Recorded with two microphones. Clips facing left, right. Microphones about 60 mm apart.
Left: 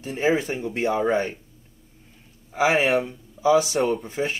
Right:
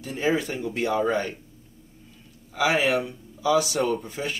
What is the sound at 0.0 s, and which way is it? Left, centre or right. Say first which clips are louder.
Speech: left 2 dB; left.